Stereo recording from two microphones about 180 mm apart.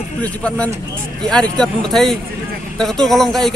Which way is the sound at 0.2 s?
5° left (ahead or behind).